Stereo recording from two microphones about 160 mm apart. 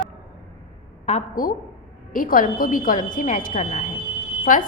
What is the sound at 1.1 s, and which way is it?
A woman's voice, 55° left (ahead or behind).